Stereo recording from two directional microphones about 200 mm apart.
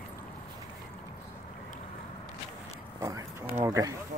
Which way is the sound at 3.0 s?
15° right (ahead or behind).